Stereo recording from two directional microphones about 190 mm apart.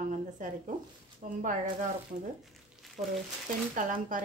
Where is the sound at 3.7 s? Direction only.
45° right (ahead or behind).